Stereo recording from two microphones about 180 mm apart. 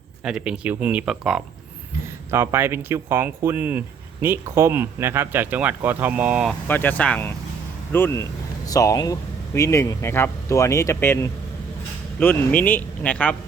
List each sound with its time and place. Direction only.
0.3 s speech: 5° right (ahead or behind)
6.7 s speech: 10° left (ahead or behind)